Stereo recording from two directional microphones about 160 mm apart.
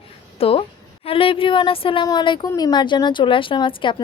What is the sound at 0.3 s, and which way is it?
A woman's voice, 35° left (ahead or behind).